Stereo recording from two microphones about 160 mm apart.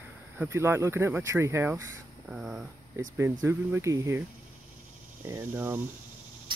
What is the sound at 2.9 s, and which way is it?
Speech, 15° right (ahead or behind).